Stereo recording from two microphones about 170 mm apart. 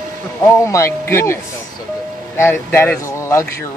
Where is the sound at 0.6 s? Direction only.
15° left (ahead or behind).